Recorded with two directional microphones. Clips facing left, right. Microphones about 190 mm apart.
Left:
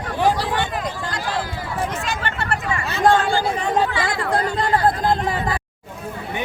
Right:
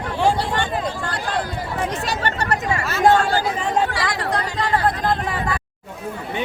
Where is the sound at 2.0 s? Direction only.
40° right (ahead or behind).